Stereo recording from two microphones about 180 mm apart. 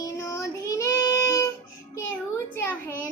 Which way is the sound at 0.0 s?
15° left (ahead or behind).